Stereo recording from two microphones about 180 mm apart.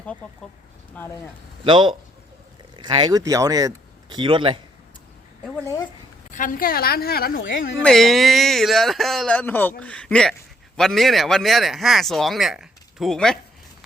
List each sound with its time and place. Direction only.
1.0 s speech: 5° left (ahead or behind)
1.6 s speech: 25° right (ahead or behind)
6.3 s a woman's voice: 50° left (ahead or behind)
7.8 s speech: 5° left (ahead or behind)